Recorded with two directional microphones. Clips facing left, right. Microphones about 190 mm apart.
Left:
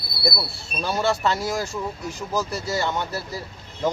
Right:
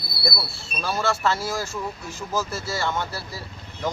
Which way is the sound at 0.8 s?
20° left (ahead or behind).